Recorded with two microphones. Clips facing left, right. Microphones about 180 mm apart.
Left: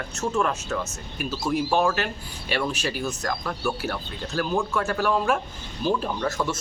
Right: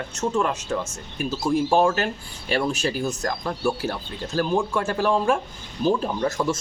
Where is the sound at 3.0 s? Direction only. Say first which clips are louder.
Right 2 dB; 25° right (ahead or behind).